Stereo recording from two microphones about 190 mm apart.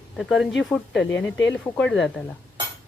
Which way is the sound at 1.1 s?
70° left (ahead or behind).